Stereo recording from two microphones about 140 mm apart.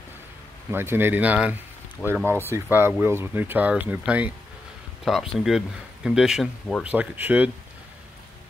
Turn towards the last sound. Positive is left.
turn(degrees=-10)  # may be behind; listen again after turning